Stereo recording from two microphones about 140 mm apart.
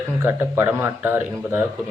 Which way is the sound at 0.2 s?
20° right (ahead or behind).